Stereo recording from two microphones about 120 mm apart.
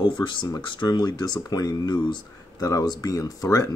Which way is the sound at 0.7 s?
35° left (ahead or behind).